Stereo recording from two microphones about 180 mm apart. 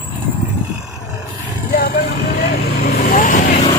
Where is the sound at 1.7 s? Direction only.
55° left (ahead or behind).